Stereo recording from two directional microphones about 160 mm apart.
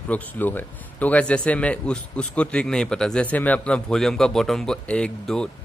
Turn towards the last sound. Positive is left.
turn(degrees=5)  # may be behind; listen again after turning